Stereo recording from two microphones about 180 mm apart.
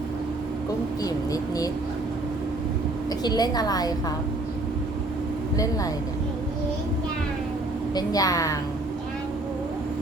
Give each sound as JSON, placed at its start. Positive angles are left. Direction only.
{"t": 1.0, "sound": "speech", "side_deg": 20}
{"t": 3.2, "sound": "speech", "side_deg": 20}
{"t": 7.9, "sound": "speech", "side_deg": 20}